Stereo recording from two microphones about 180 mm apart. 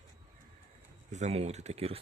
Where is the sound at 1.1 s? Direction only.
40° right (ahead or behind).